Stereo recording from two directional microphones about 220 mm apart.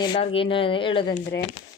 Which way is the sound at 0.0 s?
25° left (ahead or behind).